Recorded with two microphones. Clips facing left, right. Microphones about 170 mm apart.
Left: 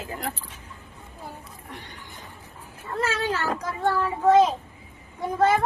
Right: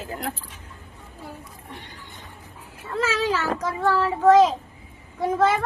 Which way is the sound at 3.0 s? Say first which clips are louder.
Right 2 dB; 90° right.